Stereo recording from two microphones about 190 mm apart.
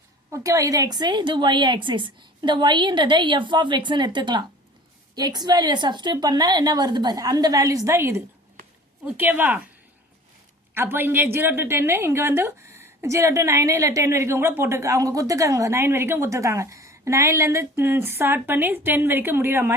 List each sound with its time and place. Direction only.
0.3 s a woman's voice: 15° right (ahead or behind)
10.8 s a woman's voice: 10° right (ahead or behind)